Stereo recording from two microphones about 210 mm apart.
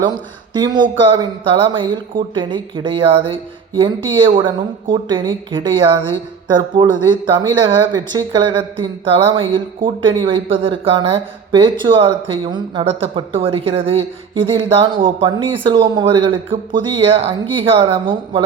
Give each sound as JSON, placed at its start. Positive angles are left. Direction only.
{"t": 0.5, "sound": "a woman's voice", "side_deg": -20}